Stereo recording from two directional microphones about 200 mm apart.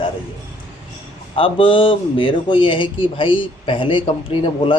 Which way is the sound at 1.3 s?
25° left (ahead or behind).